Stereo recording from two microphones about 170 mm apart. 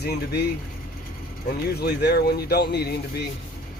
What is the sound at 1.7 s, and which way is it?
Speech, 70° left (ahead or behind).